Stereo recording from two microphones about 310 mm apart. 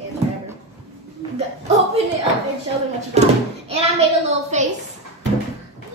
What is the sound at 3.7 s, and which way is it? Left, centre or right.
A woman's voice, centre.